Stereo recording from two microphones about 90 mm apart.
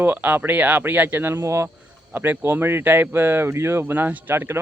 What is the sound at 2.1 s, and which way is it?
Speech, 20° right (ahead or behind).